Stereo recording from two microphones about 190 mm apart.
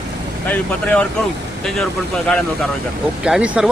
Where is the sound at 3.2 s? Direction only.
5° right (ahead or behind).